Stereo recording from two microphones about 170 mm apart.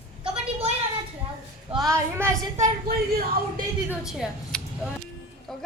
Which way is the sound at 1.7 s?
20° right (ahead or behind).